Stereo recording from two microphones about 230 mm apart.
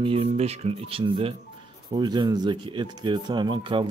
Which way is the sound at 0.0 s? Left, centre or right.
Right.